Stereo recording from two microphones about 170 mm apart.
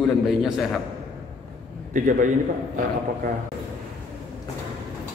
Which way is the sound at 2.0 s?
50° right (ahead or behind).